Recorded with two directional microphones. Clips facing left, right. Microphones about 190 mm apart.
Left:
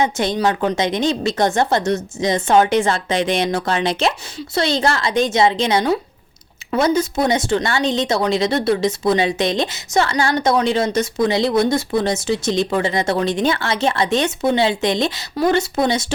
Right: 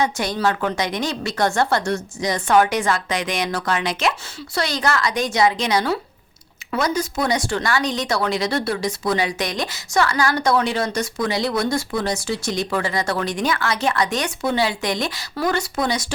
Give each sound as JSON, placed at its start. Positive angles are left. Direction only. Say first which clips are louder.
{"t": 0.0, "sound": "speech", "louder": "left 3 dB", "side_deg": 20}